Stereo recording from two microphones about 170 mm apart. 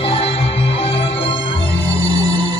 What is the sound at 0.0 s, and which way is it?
Music, 35° left (ahead or behind).